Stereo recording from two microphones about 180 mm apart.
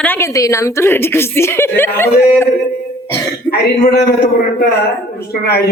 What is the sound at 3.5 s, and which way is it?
Speech, 60° left (ahead or behind).